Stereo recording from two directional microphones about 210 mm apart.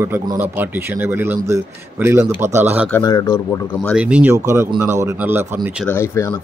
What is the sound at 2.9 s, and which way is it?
Speech, 15° left (ahead or behind).